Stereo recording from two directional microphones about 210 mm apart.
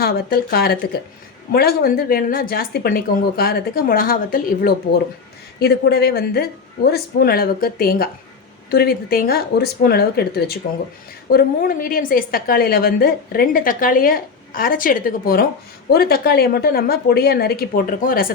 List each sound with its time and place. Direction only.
0.0 s a woman's voice: 45° left (ahead or behind)